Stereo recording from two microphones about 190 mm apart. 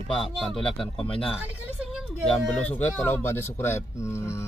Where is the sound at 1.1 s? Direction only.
30° left (ahead or behind).